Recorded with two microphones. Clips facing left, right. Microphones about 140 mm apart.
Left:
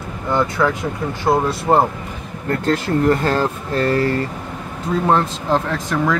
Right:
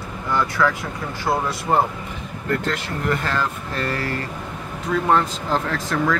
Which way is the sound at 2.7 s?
35° left (ahead or behind).